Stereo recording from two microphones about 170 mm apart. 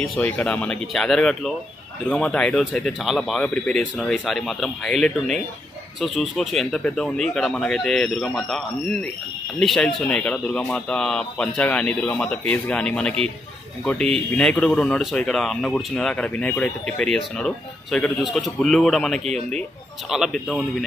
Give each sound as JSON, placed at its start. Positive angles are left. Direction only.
{"t": 0.2, "sound": "speech", "side_deg": 10}
{"t": 14.3, "sound": "speech", "side_deg": 5}
{"t": 19.2, "sound": "speech", "side_deg": -40}
{"t": 20.1, "sound": "speech", "side_deg": 0}